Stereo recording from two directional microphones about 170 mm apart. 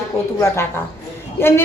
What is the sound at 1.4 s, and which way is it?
Speech, 15° left (ahead or behind).